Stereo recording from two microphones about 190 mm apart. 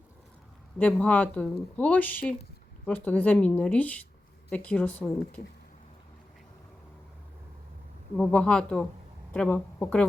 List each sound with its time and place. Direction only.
0.8 s speech: 5° left (ahead or behind)
8.2 s speech: 5° left (ahead or behind)